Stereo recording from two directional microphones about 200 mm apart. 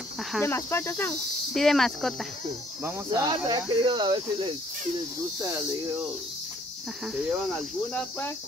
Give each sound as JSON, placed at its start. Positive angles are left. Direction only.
{"t": 0.3, "sound": "speech", "side_deg": 10}
{"t": 1.5, "sound": "speech", "side_deg": 0}
{"t": 2.8, "sound": "speech", "side_deg": -15}